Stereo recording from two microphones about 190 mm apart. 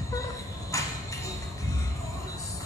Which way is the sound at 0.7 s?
15° left (ahead or behind).